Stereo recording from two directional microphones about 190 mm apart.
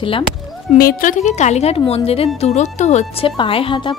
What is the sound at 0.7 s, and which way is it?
A woman's voice, 50° left (ahead or behind).